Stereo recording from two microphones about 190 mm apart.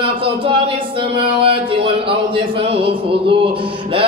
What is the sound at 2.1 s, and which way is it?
Chant, 30° right (ahead or behind).